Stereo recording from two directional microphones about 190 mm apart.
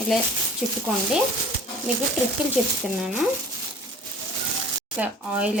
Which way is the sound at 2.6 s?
5° right (ahead or behind).